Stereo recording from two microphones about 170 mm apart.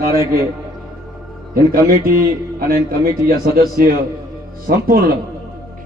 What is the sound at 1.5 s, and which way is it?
A man's voice, 60° right (ahead or behind).